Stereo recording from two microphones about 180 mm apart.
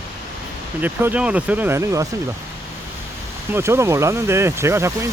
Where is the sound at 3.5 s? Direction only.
15° right (ahead or behind).